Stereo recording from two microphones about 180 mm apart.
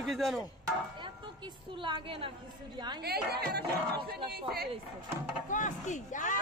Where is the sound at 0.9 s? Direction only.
25° right (ahead or behind).